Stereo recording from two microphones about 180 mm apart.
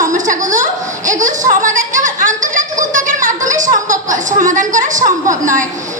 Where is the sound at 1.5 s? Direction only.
45° right (ahead or behind).